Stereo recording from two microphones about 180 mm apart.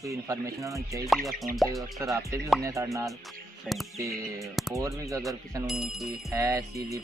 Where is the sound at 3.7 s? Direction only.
5° right (ahead or behind).